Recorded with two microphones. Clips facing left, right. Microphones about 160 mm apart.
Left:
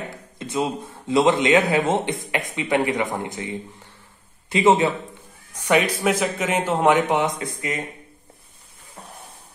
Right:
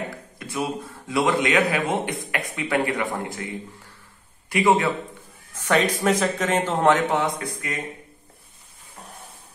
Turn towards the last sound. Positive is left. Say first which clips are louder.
# left 2 dB
turn(degrees=20)  # may be behind; listen again after turning